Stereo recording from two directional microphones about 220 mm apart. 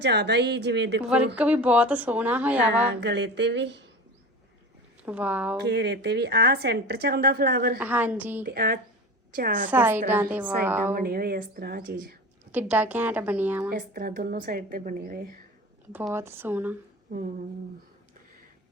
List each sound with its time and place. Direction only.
0.0 s a woman's voice: 50° right (ahead or behind)
1.4 s speech: 5° right (ahead or behind)
3.0 s a woman's voice: 50° right (ahead or behind)
5.0 s speech: 5° right (ahead or behind)
5.5 s a woman's voice: 50° right (ahead or behind)
7.8 s speech: 10° right (ahead or behind)
8.4 s a woman's voice: 40° right (ahead or behind)
9.6 s speech: 10° right (ahead or behind)
10.9 s a woman's voice: 45° right (ahead or behind)
12.5 s speech: 10° right (ahead or behind)
13.7 s a woman's voice: 40° right (ahead or behind)
15.9 s speech: 10° right (ahead or behind)